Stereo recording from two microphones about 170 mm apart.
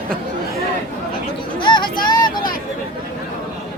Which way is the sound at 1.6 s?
30° left (ahead or behind).